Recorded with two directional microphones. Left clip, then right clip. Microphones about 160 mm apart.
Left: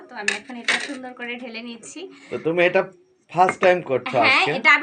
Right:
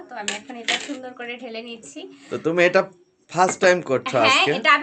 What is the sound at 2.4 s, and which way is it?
Speech, 30° right (ahead or behind).